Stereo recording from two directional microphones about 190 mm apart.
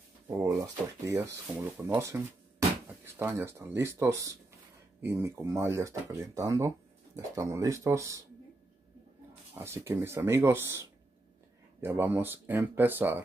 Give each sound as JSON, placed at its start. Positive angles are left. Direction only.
{"t": 0.3, "sound": "speech", "side_deg": -15}
{"t": 9.6, "sound": "speech", "side_deg": -10}